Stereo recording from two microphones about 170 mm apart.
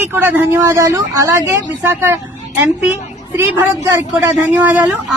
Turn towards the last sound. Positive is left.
turn(degrees=-10)  # may be behind; listen again after turning